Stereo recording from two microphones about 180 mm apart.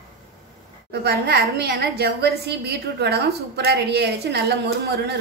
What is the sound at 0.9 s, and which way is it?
A woman's voice, 65° right (ahead or behind).